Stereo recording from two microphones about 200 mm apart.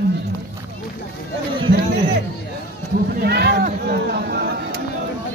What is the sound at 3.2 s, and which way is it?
Speech, 55° right (ahead or behind).